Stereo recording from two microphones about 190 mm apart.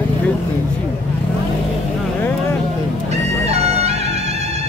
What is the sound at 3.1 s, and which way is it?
Music, 35° right (ahead or behind).